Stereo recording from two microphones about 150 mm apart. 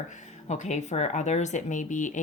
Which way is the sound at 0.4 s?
50° left (ahead or behind).